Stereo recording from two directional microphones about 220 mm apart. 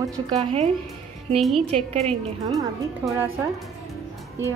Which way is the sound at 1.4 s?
Centre (ahead or behind).